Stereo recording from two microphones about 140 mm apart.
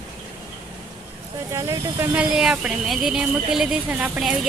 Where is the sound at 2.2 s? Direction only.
5° right (ahead or behind).